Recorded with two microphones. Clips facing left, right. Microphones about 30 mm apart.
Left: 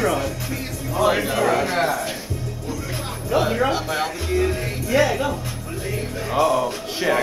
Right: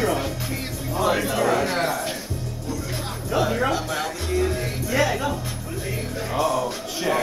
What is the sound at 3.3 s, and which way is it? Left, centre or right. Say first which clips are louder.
Speech: left 2 dB; centre.